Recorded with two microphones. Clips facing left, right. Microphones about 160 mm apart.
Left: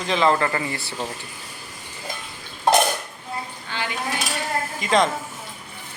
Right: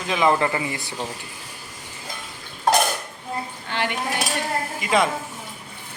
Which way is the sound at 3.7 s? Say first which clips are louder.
Right 4 dB; 65° right (ahead or behind).